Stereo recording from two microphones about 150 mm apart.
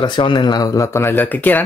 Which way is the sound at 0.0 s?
30° left (ahead or behind).